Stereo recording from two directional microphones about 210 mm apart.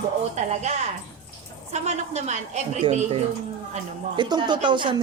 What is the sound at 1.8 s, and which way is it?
A woman's voice, 30° right (ahead or behind).